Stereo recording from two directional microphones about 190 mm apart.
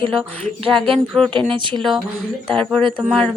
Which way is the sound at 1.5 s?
25° right (ahead or behind).